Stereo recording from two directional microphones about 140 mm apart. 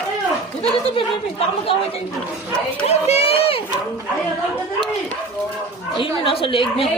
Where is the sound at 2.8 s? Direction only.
50° left (ahead or behind).